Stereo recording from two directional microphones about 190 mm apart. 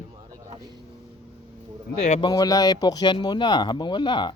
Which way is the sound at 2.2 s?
20° left (ahead or behind).